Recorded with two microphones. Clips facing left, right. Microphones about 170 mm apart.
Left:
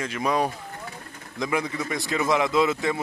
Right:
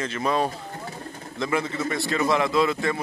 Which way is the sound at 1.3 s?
15° left (ahead or behind).